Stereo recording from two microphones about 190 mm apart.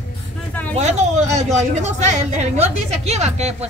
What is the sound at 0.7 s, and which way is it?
A woman's voice, 35° right (ahead or behind).